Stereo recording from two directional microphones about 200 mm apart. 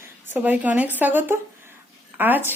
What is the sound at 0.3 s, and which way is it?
A woman's voice, 10° right (ahead or behind).